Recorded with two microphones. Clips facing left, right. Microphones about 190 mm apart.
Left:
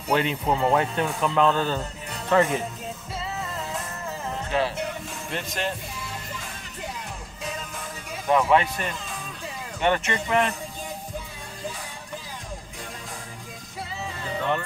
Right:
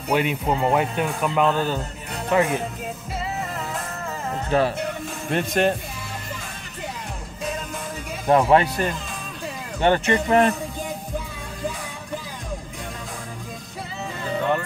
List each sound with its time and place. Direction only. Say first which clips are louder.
0.1 s speech: right 2 dB; 10° right (ahead or behind)
4.5 s speech: right 5 dB; 45° right (ahead or behind)
5.3 s speech: right 9 dB; 60° right (ahead or behind)
8.3 s speech: right 4 dB; 35° right (ahead or behind)